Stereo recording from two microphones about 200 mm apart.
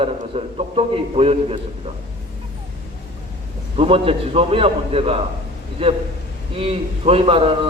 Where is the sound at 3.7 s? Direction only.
30° right (ahead or behind).